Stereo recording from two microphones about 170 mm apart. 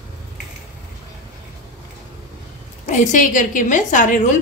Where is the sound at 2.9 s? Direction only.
50° left (ahead or behind).